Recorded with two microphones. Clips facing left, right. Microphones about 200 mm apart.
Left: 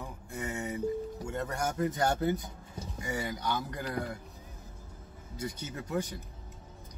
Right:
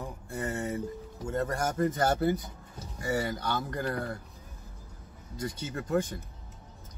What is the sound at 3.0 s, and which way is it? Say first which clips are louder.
Speech: right 5 dB; 15° left (ahead or behind).